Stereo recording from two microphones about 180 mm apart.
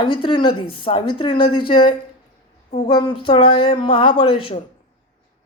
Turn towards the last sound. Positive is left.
turn(degrees=30)  # may be behind; listen again after turning